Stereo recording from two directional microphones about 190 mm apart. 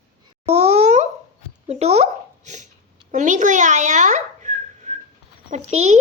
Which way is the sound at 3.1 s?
40° right (ahead or behind).